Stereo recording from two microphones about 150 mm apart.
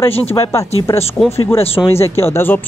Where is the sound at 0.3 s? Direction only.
20° left (ahead or behind).